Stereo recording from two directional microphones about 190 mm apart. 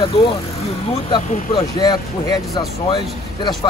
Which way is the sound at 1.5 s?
20° left (ahead or behind).